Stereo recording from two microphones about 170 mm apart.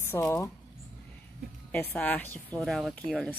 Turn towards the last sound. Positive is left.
turn(degrees=5)  # may be behind; listen again after turning